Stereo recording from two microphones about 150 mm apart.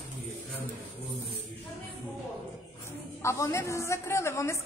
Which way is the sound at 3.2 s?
20° left (ahead or behind).